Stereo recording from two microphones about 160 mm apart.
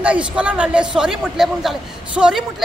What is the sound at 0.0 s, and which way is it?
A man's voice, 5° right (ahead or behind).